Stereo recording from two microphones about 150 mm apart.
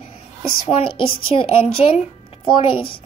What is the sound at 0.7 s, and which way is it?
A woman's voice, 35° left (ahead or behind).